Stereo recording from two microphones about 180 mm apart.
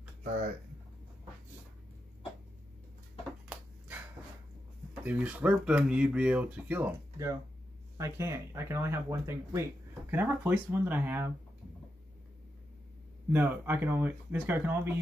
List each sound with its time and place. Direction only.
5.0 s speech: 5° right (ahead or behind)
13.3 s speech: 10° right (ahead or behind)